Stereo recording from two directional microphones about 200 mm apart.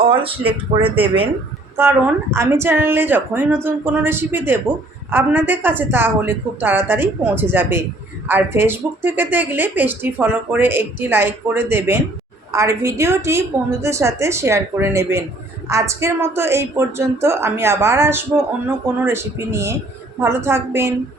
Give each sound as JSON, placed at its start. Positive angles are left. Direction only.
{"t": 0.0, "sound": "speech", "side_deg": -25}
{"t": 1.7, "sound": "a woman's voice", "side_deg": -10}